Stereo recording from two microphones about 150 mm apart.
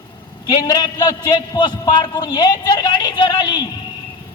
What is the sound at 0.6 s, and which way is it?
A man's voice, 25° left (ahead or behind).